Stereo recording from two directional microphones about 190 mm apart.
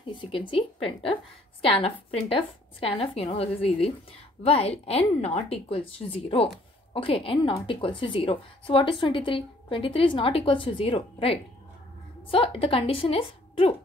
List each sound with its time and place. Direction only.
0.0 s a woman's voice: 25° left (ahead or behind)